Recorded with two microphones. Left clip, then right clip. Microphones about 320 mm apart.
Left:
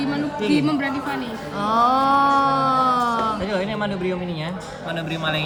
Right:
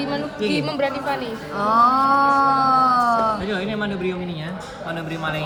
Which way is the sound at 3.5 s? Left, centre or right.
Left.